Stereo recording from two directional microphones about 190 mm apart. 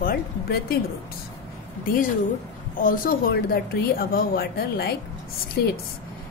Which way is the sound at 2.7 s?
45° left (ahead or behind).